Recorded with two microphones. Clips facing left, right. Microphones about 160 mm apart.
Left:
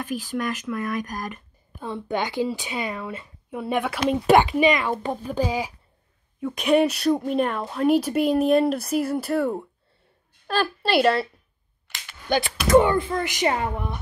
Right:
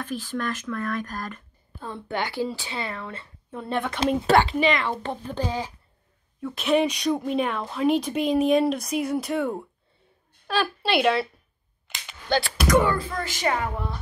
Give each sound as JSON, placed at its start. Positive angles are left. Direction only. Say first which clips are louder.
{"t": 0.0, "sound": "a woman's voice", "louder": "left 2 dB", "side_deg": 10}
{"t": 12.3, "sound": "speech", "louder": "left 3 dB", "side_deg": 20}